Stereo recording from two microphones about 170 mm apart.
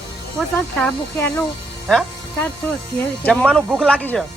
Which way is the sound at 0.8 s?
5° left (ahead or behind).